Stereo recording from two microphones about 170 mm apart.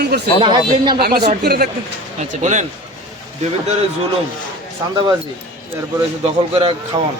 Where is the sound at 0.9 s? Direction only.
65° right (ahead or behind).